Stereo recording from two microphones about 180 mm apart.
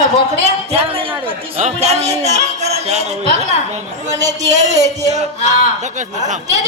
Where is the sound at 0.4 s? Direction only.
35° right (ahead or behind).